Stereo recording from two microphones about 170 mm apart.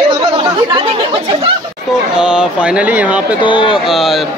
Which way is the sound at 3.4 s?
30° left (ahead or behind).